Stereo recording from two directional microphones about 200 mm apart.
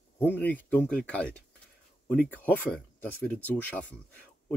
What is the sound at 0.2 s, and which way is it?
Speech, 10° left (ahead or behind).